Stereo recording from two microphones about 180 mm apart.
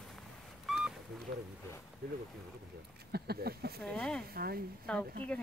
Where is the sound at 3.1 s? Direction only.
60° right (ahead or behind).